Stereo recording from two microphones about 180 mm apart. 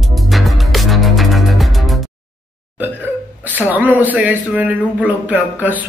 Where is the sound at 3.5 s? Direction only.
10° right (ahead or behind).